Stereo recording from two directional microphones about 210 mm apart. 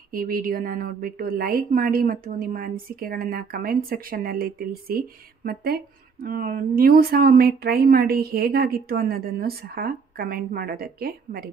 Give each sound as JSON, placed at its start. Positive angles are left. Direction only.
{"t": 0.1, "sound": "a woman's voice", "side_deg": -45}